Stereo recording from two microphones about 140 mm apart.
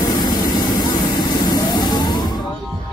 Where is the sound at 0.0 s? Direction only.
30° left (ahead or behind).